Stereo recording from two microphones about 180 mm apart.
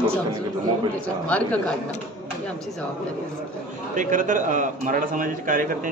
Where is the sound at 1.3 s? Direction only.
5° left (ahead or behind).